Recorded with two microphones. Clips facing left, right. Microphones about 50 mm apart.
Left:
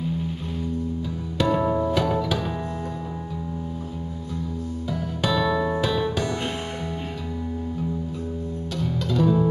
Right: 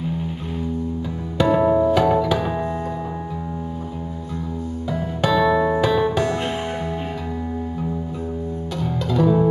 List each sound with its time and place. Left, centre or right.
1.4 s music: centre
5.2 s music: centre
5.8 s music: centre
8.7 s music: centre